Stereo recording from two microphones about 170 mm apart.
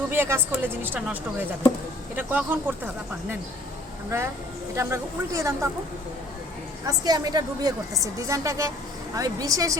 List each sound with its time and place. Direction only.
0.1 s a woman's voice: 15° right (ahead or behind)
4.7 s a woman's voice: 15° right (ahead or behind)
6.8 s a woman's voice: 25° right (ahead or behind)